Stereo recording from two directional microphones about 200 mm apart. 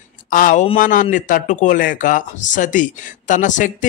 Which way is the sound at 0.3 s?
40° left (ahead or behind).